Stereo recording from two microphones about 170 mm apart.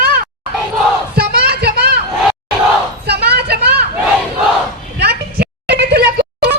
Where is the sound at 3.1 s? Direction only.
70° right (ahead or behind).